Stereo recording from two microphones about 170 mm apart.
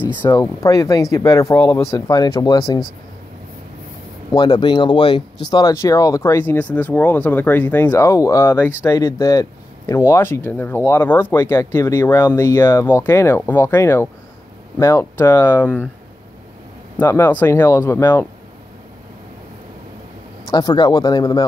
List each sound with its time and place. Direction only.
0.3 s speech: 20° left (ahead or behind)
4.3 s speech: 25° left (ahead or behind)
17.0 s speech: 15° left (ahead or behind)
20.4 s speech: 25° left (ahead or behind)